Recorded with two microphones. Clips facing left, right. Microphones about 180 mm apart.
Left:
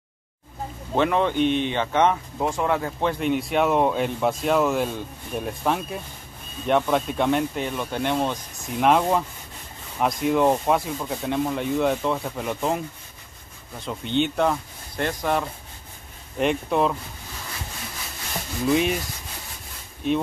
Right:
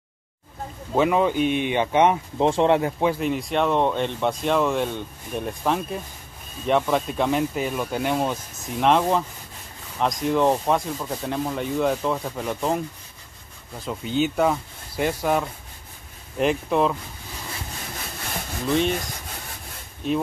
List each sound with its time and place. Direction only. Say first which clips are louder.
0.9 s speech: right 1 dB; 5° right (ahead or behind)
2.4 s speech: right 5 dB; 25° right (ahead or behind)
3.0 s speech: right 1 dB; 5° right (ahead or behind)
18.7 s sanding: left 1 dB; 5° left (ahead or behind)